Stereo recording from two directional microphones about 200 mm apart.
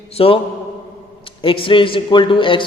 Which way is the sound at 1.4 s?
25° left (ahead or behind).